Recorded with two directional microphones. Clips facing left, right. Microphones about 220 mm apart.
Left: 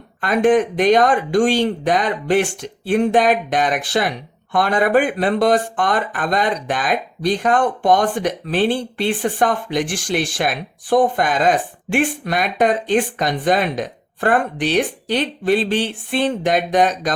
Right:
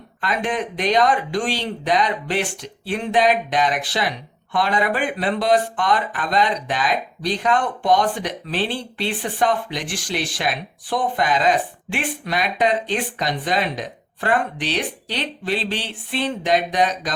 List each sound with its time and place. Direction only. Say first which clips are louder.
0.2 s speech: left 9 dB; 50° left (ahead or behind)